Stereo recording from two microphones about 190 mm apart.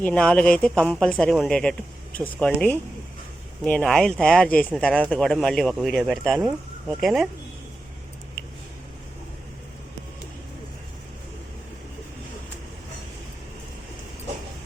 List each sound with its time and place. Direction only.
0.0 s speech: 5° left (ahead or behind)